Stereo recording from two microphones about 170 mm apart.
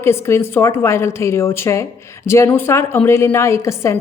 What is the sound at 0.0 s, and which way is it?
A woman's voice, 15° left (ahead or behind).